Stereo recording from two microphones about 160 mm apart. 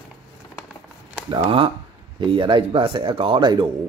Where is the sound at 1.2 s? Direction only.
30° right (ahead or behind).